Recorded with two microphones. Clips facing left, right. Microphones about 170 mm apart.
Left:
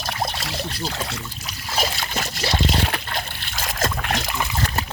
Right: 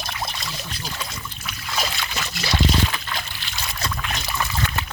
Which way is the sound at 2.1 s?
40° left (ahead or behind).